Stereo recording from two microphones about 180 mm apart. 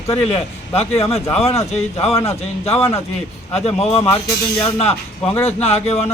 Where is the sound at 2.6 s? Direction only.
35° left (ahead or behind).